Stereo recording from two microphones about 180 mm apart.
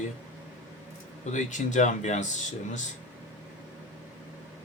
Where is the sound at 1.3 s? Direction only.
45° left (ahead or behind).